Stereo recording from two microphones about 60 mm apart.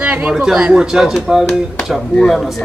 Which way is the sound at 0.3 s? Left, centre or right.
Centre.